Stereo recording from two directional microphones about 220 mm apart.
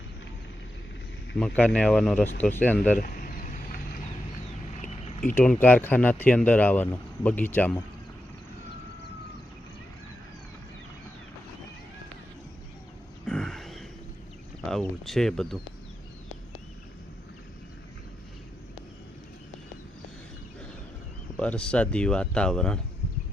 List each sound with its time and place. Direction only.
1.4 s speech: 5° left (ahead or behind)
3.0 s a sound: 40° left (ahead or behind)
5.3 s speech: 10° left (ahead or behind)
13.2 s grunt: 5° left (ahead or behind)
14.7 s speech: centre (ahead or behind)
21.3 s speech: 5° left (ahead or behind)